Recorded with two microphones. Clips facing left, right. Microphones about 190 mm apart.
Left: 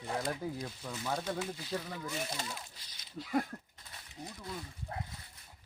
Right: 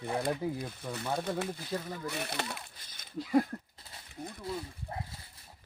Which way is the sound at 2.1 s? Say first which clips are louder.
Right 2 dB; 65° right (ahead or behind).